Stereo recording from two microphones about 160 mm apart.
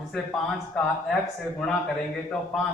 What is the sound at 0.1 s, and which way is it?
Speech, 5° left (ahead or behind).